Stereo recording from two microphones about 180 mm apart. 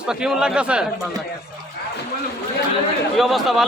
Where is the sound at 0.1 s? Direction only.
5° right (ahead or behind).